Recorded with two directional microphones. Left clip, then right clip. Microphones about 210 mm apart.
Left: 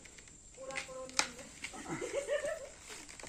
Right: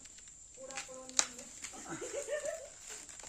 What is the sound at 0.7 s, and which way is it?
Music, 10° right (ahead or behind).